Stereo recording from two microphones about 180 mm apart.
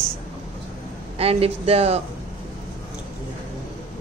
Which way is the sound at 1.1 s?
35° right (ahead or behind).